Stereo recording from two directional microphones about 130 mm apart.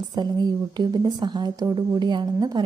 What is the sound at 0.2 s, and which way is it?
A woman's voice, 30° right (ahead or behind).